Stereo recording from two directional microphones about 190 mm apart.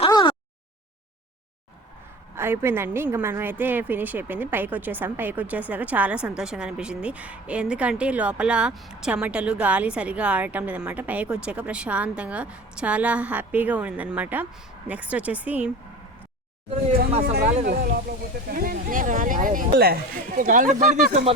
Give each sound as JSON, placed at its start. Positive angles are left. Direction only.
{"t": 0.0, "sound": "a sound", "side_deg": 25}
{"t": 2.3, "sound": "a woman's voice", "side_deg": -10}
{"t": 17.4, "sound": "speech", "side_deg": -35}
{"t": 18.5, "sound": "speech", "side_deg": -50}